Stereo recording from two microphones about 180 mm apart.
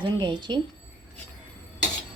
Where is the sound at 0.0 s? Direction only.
25° right (ahead or behind).